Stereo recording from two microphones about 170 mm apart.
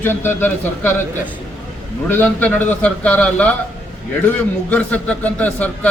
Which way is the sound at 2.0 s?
10° left (ahead or behind).